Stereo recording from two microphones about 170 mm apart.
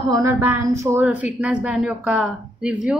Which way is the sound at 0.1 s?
15° right (ahead or behind).